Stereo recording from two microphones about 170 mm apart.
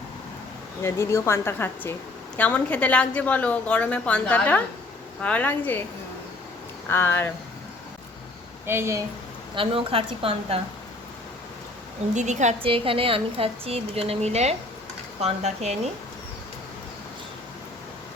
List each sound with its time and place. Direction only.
0.8 s a woman's voice: 15° left (ahead or behind)
6.8 s a woman's voice: 15° left (ahead or behind)
8.6 s a woman's voice: 15° right (ahead or behind)
9.6 s a woman's voice: 35° right (ahead or behind)
12.1 s a woman's voice: 45° right (ahead or behind)